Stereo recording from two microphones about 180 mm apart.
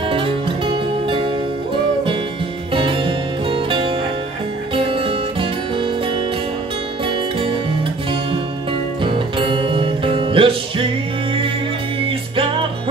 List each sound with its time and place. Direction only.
2.7 s music: 30° right (ahead or behind)
9.0 s music: 30° right (ahead or behind)